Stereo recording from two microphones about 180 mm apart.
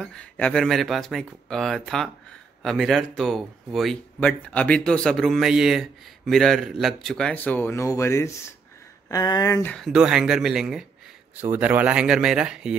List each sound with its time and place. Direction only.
0.0 s speech: 5° left (ahead or behind)
9.7 s speech: centre (ahead or behind)